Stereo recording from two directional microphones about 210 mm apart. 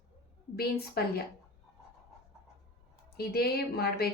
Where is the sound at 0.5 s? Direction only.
45° left (ahead or behind).